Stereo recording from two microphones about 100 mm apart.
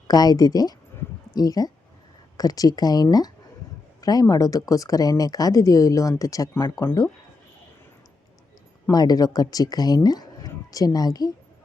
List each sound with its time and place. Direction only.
0.1 s speech: 40° left (ahead or behind)
8.9 s speech: 40° left (ahead or behind)